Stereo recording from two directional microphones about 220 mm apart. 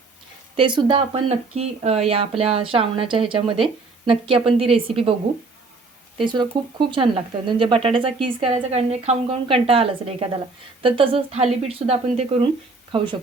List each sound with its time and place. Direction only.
0.5 s speech: 20° right (ahead or behind)
6.1 s speech: 20° right (ahead or behind)